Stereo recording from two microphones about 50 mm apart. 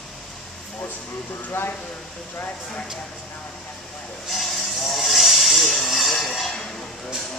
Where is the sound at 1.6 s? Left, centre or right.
Left.